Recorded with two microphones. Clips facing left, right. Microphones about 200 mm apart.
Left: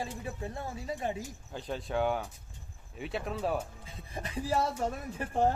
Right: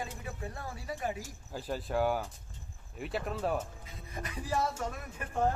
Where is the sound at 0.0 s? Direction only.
25° left (ahead or behind).